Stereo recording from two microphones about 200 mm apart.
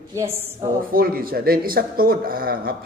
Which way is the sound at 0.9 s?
50° right (ahead or behind).